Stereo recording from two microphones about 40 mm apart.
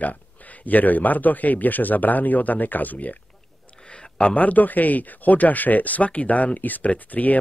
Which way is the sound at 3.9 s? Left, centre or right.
Left.